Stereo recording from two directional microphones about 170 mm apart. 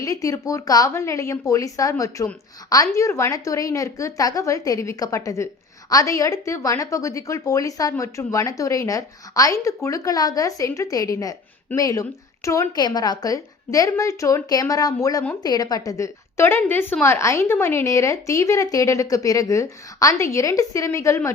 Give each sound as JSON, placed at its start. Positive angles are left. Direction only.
{"t": 0.0, "sound": "a woman's voice", "side_deg": 20}